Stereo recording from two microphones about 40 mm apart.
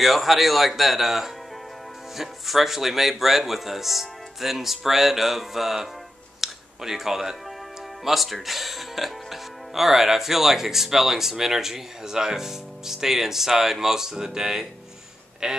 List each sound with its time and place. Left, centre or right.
0.0 s speech: centre
6.4 s music: centre
8.0 s a man's voice: centre